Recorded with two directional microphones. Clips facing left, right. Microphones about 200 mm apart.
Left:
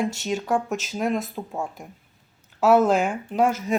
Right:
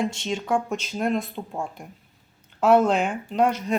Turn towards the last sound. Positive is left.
turn(degrees=5)  # may be behind; listen again after turning